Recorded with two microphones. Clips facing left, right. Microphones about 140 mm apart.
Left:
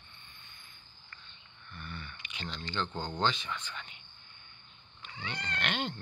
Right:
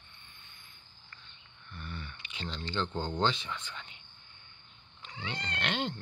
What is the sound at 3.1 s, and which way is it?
Speech, 25° right (ahead or behind).